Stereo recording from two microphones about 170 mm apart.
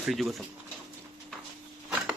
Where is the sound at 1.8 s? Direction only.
5° right (ahead or behind).